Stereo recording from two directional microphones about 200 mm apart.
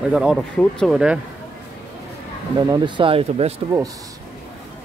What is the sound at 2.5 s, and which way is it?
Speech, 20° right (ahead or behind).